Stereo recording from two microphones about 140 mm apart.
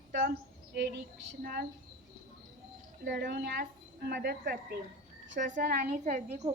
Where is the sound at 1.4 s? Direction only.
90° right.